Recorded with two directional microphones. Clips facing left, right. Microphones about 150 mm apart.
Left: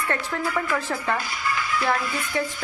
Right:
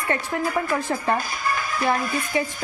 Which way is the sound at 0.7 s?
15° right (ahead or behind).